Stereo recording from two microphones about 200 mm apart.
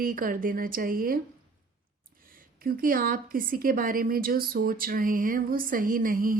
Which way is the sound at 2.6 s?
45° right (ahead or behind).